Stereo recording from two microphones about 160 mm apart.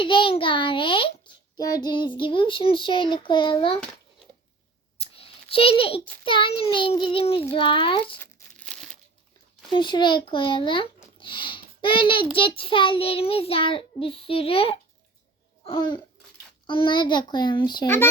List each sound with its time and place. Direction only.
0.0 s child singing: 30° left (ahead or behind)
4.9 s a sound: 35° left (ahead or behind)
6.2 s child singing: 30° left (ahead or behind)
8.2 s crumpling: 5° left (ahead or behind)
9.7 s child singing: 30° left (ahead or behind)
11.2 s a child's voice: 30° left (ahead or behind)
12.4 s child singing: 35° left (ahead or behind)
16.6 s a child's voice: 30° left (ahead or behind)
17.8 s speech: 15° left (ahead or behind)